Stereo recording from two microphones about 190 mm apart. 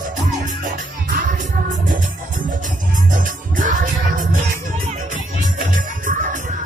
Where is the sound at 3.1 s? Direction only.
45° right (ahead or behind).